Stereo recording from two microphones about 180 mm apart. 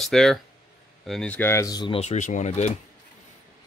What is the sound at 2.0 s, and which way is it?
Speech, 40° left (ahead or behind).